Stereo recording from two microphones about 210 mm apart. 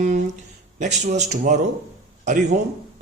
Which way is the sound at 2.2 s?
35° right (ahead or behind).